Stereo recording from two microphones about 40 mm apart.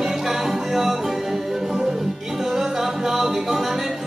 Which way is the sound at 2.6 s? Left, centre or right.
Centre.